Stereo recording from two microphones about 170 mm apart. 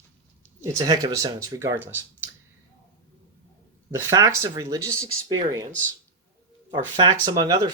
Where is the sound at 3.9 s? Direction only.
20° right (ahead or behind).